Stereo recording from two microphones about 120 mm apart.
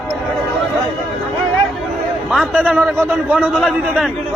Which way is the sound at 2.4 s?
10° right (ahead or behind).